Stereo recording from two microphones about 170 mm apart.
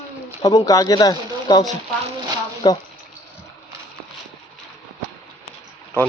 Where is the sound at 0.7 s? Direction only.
20° left (ahead or behind).